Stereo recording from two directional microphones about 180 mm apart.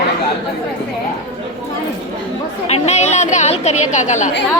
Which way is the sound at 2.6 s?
35° left (ahead or behind).